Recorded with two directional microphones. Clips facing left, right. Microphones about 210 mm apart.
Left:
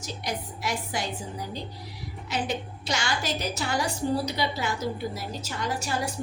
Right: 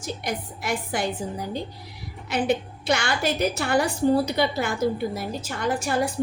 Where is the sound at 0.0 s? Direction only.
55° right (ahead or behind).